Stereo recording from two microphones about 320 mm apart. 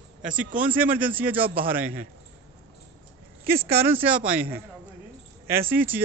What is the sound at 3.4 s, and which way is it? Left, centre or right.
Speech, centre.